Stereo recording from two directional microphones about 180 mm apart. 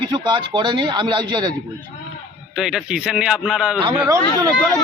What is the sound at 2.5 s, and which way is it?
A man's voice, centre (ahead or behind).